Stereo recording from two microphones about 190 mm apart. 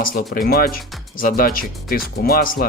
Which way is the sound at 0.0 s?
50° left (ahead or behind).